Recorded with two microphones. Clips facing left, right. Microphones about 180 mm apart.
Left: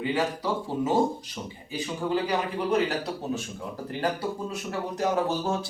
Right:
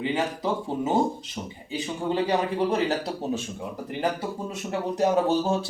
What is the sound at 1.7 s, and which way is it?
Speech, 25° right (ahead or behind).